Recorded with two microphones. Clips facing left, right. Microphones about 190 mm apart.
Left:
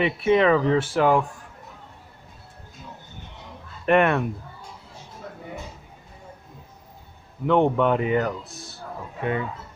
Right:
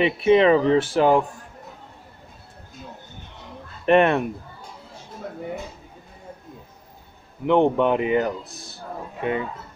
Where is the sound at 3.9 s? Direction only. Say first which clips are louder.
Right 2 dB; 25° right (ahead or behind).